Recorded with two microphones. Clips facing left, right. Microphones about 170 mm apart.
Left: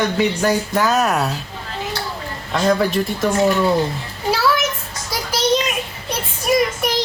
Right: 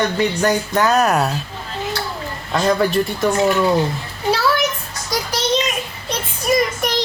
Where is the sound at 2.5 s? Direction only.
Centre (ahead or behind).